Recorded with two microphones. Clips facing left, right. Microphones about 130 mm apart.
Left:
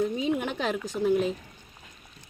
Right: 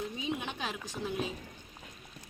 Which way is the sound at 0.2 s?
85° left.